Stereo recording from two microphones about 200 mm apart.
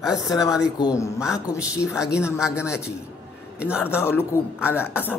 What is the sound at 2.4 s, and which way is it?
Speech, 5° right (ahead or behind).